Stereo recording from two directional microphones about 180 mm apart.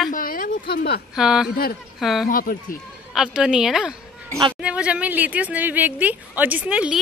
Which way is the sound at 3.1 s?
5° right (ahead or behind).